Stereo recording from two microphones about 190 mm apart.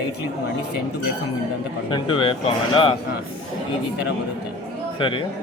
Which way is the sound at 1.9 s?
25° left (ahead or behind).